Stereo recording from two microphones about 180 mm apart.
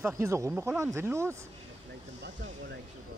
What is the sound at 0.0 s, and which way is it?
Speech, 15° right (ahead or behind).